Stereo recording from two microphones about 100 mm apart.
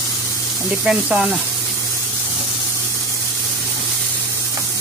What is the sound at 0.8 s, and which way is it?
Speech, 5° right (ahead or behind).